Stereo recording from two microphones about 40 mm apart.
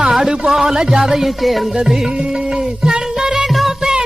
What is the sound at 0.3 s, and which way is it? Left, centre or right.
Music, centre.